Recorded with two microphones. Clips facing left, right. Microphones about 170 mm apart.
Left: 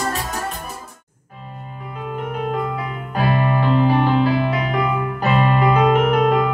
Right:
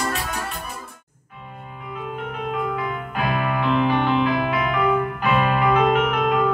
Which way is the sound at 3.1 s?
40° left (ahead or behind).